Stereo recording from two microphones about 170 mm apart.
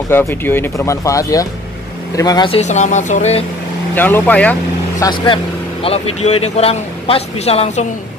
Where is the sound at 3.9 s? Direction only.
10° left (ahead or behind).